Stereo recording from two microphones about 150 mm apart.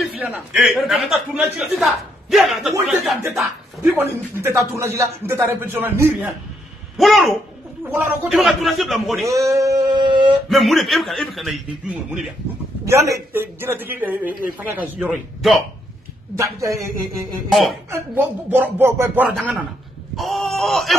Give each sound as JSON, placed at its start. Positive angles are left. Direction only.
{"t": 0.1, "sound": "a man's voice", "side_deg": -10}
{"t": 7.0, "sound": "a man's voice", "side_deg": 0}
{"t": 7.9, "sound": "speech", "side_deg": -15}
{"t": 8.3, "sound": "a man's voice", "side_deg": 0}
{"t": 9.3, "sound": "a sound", "side_deg": -20}
{"t": 10.5, "sound": "a man's voice", "side_deg": 0}
{"t": 12.8, "sound": "speech", "side_deg": -20}
{"t": 16.3, "sound": "a man's voice", "side_deg": -20}
{"t": 17.5, "sound": "a man's voice", "side_deg": 0}
{"t": 18.1, "sound": "speech", "side_deg": -15}
{"t": 20.2, "sound": "a man's voice", "side_deg": 0}